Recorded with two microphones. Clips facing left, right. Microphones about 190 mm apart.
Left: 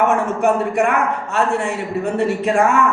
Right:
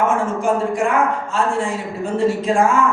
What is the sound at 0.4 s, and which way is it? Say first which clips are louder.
A man's voice: left 3 dB; 65° left (ahead or behind).